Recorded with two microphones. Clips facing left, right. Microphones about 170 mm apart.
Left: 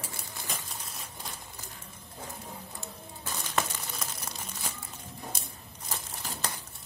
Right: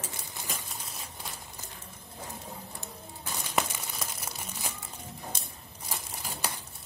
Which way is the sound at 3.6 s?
15° right (ahead or behind).